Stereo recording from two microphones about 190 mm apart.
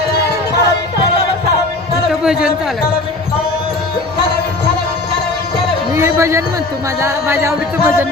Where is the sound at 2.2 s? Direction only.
5° right (ahead or behind).